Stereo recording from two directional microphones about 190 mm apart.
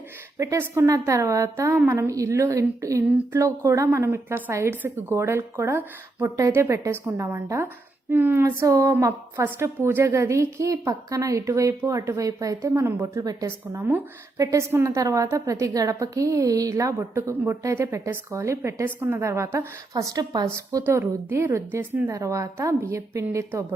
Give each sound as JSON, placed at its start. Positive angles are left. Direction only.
{"t": 0.3, "sound": "a woman's voice", "side_deg": -15}